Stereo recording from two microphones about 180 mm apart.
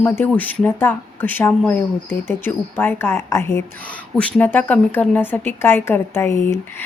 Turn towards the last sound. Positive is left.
turn(degrees=15)  # may be behind; listen again after turning